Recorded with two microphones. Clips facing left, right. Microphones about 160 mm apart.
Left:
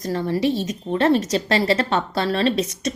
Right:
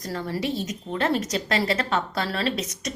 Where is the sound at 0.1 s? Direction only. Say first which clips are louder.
Left 7 dB; 25° left (ahead or behind).